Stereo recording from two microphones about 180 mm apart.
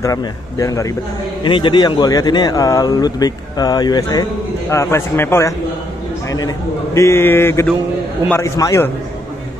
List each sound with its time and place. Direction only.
0.0 s a man's voice: 20° left (ahead or behind)